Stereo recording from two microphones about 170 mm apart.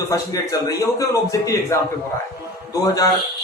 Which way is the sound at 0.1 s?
20° left (ahead or behind).